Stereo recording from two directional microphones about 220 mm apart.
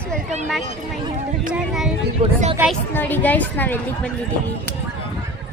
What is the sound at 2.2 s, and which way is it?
Speech, 30° right (ahead or behind).